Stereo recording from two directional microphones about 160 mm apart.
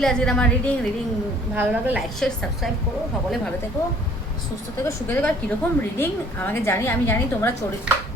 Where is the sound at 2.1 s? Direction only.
5° left (ahead or behind).